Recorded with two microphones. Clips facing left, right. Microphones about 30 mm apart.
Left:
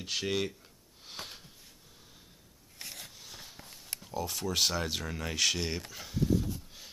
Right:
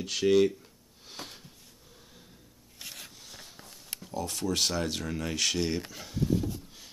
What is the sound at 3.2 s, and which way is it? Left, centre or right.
Rub, centre.